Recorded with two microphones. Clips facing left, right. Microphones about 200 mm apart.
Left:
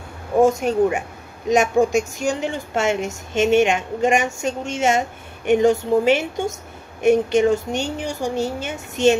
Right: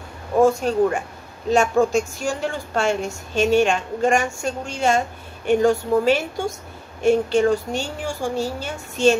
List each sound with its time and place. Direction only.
0.4 s a woman's voice: 20° left (ahead or behind)